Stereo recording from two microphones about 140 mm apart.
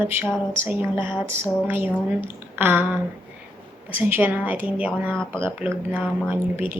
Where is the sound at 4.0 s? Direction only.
15° right (ahead or behind).